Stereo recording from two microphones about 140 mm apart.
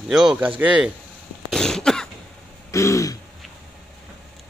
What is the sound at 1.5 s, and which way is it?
Cough, 5° left (ahead or behind).